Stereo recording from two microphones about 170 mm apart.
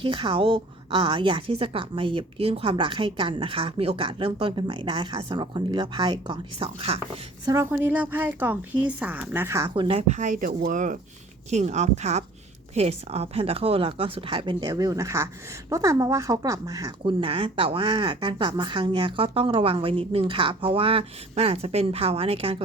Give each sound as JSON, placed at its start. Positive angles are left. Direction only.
{"t": 0.0, "sound": "a woman's voice", "side_deg": -30}
{"t": 7.4, "sound": "speech", "side_deg": -15}
{"t": 9.7, "sound": "a woman's voice", "side_deg": -35}
{"t": 17.0, "sound": "speech", "side_deg": -30}